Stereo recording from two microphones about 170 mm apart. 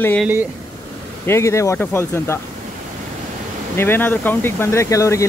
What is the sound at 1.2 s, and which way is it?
Speech, 15° left (ahead or behind).